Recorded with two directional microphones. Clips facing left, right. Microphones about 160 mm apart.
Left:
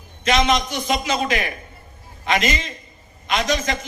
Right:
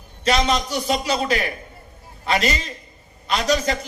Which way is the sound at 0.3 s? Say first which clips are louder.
Left 1 dB; 35° right (ahead or behind).